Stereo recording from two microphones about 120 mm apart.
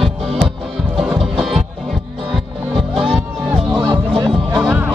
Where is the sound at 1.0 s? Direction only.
5° right (ahead or behind).